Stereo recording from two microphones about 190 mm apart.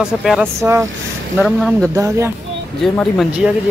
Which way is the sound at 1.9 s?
15° right (ahead or behind).